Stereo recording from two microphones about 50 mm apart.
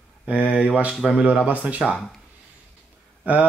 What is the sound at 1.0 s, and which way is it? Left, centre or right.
Speech, centre.